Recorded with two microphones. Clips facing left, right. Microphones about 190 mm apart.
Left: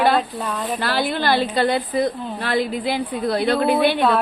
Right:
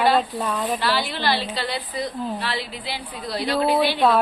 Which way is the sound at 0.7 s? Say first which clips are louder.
Left 3 dB; 50° left (ahead or behind).